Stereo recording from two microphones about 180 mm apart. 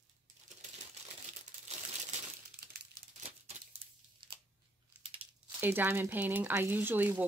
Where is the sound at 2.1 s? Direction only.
40° right (ahead or behind).